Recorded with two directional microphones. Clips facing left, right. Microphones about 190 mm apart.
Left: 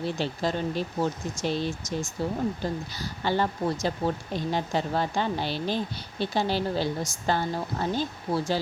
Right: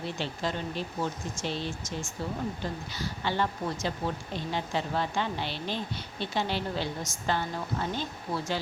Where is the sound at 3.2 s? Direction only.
40° left (ahead or behind).